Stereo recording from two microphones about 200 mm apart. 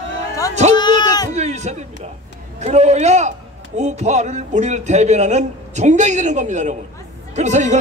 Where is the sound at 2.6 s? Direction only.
35° right (ahead or behind).